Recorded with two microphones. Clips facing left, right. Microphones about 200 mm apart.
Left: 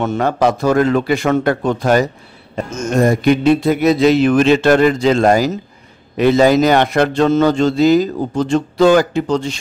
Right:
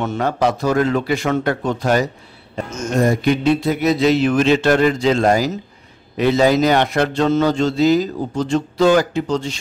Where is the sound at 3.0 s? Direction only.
50° left (ahead or behind).